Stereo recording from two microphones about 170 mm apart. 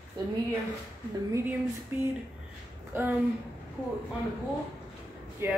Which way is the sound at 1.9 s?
15° right (ahead or behind).